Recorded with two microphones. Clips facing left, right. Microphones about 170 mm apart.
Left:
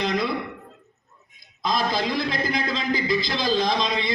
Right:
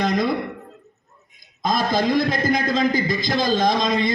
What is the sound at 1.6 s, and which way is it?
A man's voice, 45° right (ahead or behind).